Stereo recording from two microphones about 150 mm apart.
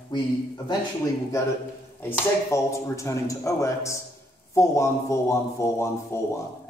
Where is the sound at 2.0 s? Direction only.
15° left (ahead or behind).